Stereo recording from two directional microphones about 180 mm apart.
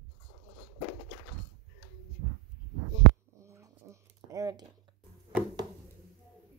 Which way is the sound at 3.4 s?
15° right (ahead or behind).